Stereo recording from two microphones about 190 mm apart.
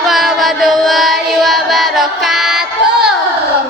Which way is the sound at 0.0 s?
Centre (ahead or behind).